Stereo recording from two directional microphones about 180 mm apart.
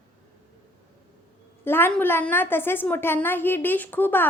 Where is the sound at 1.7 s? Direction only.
10° left (ahead or behind).